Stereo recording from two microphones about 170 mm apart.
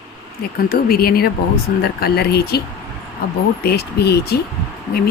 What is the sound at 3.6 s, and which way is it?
Speech, 70° left (ahead or behind).